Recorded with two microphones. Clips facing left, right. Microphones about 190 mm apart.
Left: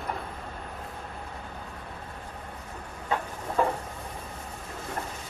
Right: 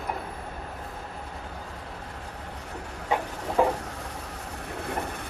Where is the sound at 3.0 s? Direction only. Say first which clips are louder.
Right 2 dB; 15° right (ahead or behind).